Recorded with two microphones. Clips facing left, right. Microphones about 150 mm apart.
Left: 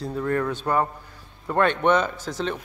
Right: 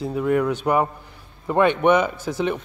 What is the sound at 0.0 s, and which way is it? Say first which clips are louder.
Speech: right 4 dB; 10° right (ahead or behind).